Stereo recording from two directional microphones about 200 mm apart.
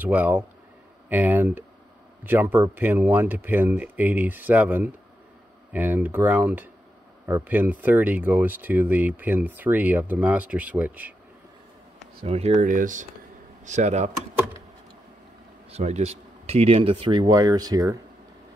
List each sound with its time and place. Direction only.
0.0 s speech: 10° right (ahead or behind)
12.2 s speech: 30° right (ahead or behind)
15.7 s speech: 35° right (ahead or behind)